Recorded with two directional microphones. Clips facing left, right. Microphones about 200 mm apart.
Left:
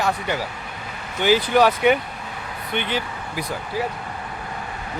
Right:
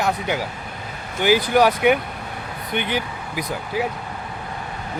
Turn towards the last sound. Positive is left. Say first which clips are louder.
# right 1 dB
turn(degrees=-10)  # may be behind; listen again after turning